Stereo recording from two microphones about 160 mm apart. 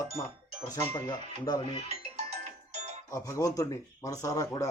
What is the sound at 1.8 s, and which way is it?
Music, 45° right (ahead or behind).